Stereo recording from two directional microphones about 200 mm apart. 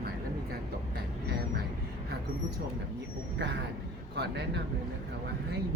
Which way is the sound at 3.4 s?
60° right (ahead or behind).